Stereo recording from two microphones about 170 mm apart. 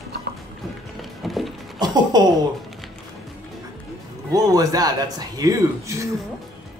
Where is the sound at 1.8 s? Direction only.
25° right (ahead or behind).